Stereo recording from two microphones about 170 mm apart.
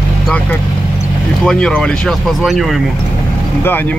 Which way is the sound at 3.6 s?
10° left (ahead or behind).